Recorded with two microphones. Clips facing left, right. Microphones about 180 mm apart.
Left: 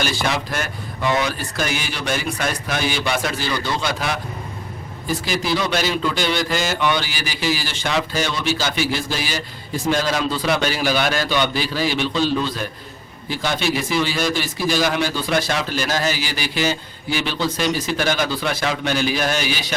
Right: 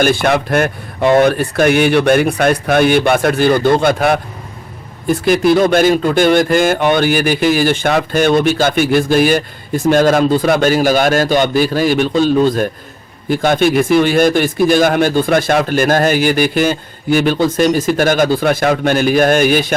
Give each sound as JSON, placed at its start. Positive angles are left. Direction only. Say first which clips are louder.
{"t": 0.0, "sound": "speech", "louder": "right 10 dB", "side_deg": -55}